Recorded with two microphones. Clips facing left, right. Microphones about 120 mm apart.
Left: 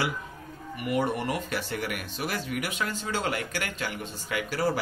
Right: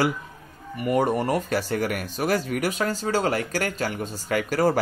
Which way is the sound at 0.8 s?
40° right (ahead or behind).